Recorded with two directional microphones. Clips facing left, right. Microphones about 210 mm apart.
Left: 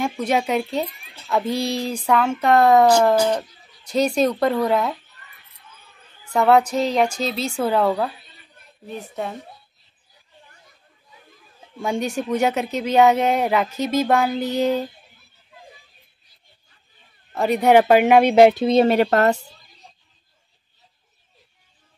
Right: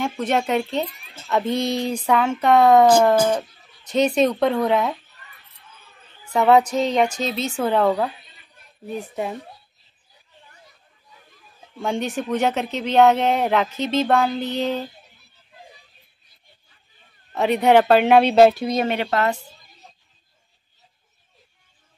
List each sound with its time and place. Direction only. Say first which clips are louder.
0.4 s a woman's voice: even; 5° left (ahead or behind)
6.3 s a woman's voice: even; centre (ahead or behind)
11.8 s a woman's voice: left 1 dB; centre (ahead or behind)
17.4 s speech: left 1 dB; centre (ahead or behind); by 18.9 s 30° left (ahead or behind)
18.9 s speech: left 5 dB; 45° left (ahead or behind)